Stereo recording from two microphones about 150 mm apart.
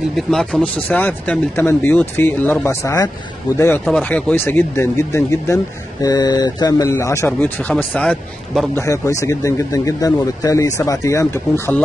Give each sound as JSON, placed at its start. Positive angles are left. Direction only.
{"t": 0.3, "sound": "speech", "side_deg": 5}
{"t": 3.8, "sound": "speech", "side_deg": 5}
{"t": 8.7, "sound": "speech", "side_deg": 20}